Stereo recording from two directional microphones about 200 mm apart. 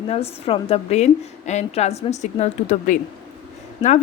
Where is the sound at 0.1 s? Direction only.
30° left (ahead or behind).